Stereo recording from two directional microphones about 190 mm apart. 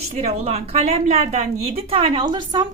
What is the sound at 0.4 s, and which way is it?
A woman's voice, 30° right (ahead or behind).